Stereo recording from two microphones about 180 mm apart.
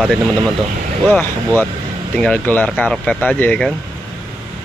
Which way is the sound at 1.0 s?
10° left (ahead or behind).